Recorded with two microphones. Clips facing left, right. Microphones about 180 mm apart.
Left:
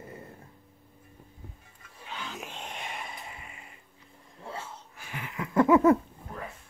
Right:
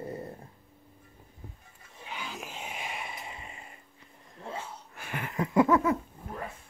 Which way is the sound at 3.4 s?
30° right (ahead or behind).